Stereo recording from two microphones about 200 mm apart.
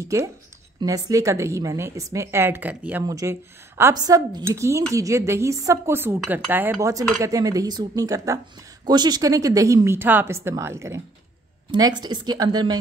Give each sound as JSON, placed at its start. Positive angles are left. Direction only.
{"t": 0.0, "sound": "a woman's voice", "side_deg": -15}